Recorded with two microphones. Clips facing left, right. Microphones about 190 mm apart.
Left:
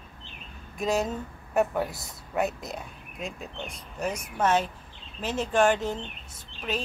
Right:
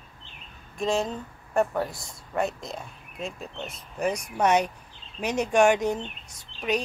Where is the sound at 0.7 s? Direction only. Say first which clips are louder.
Even; centre (ahead or behind).